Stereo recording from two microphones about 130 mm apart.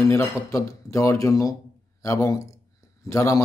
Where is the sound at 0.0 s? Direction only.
25° left (ahead or behind).